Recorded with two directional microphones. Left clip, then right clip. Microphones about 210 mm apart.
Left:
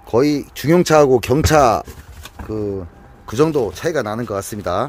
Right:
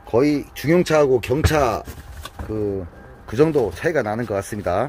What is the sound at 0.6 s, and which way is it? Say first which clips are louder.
Speech: left 5 dB; 30° left (ahead or behind).